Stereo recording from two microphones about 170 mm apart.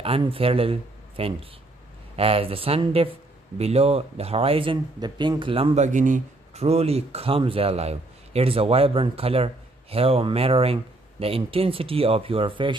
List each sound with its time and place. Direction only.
0.0 s speech: 35° right (ahead or behind)
5.9 s speech: 50° right (ahead or behind); by 12.7 s 30° right (ahead or behind)